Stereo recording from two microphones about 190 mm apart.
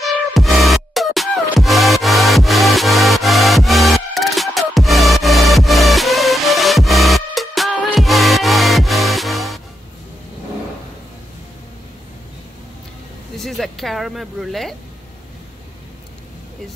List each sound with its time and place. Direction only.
0.0 s music: centre (ahead or behind)
13.4 s speech: centre (ahead or behind)